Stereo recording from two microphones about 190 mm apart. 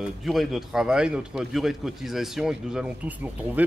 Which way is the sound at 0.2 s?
Centre (ahead or behind).